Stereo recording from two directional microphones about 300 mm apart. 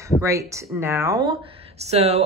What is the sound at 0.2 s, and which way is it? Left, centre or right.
A woman's voice, centre.